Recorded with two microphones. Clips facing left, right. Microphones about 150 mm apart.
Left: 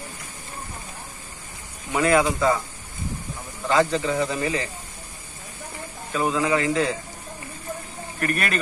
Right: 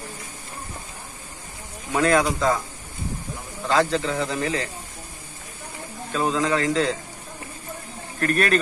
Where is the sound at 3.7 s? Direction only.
15° left (ahead or behind).